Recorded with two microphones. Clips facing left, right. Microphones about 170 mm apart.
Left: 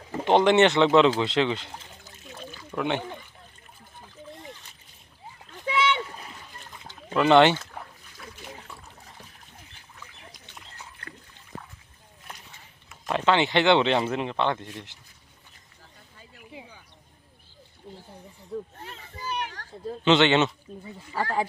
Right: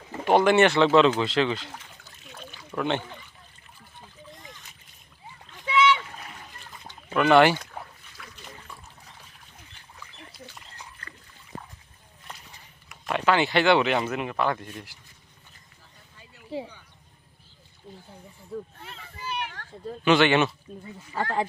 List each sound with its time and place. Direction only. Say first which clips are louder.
0.3 s speech: even; 20° left (ahead or behind)
2.2 s a sound: left 3 dB; centre (ahead or behind)
2.7 s speech: even; 10° left (ahead or behind)
5.5 s splash: right 3 dB; 45° left (ahead or behind)
7.2 s speech: even; 25° left (ahead or behind)
8.2 s boat: left 3 dB; 35° left (ahead or behind)
13.1 s speech: even; 20° left (ahead or behind)
19.2 s children playing: left 1 dB; 35° left (ahead or behind)
20.1 s speech: even; 20° left (ahead or behind)
21.2 s speech: even; 10° left (ahead or behind)